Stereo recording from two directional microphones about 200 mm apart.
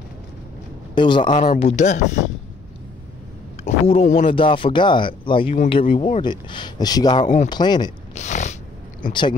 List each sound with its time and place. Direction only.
0.9 s speech: 25° left (ahead or behind)
3.6 s speech: 30° left (ahead or behind)
8.1 s a sound: 35° left (ahead or behind)